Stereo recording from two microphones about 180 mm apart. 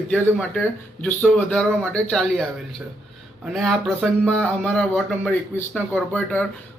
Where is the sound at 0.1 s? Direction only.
10° left (ahead or behind).